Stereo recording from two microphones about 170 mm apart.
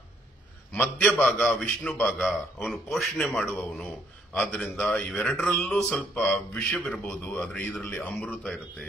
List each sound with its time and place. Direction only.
0.7 s a man's voice: 10° left (ahead or behind)